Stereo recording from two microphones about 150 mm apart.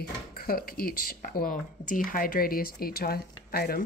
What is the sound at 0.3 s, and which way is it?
Speech, 80° left.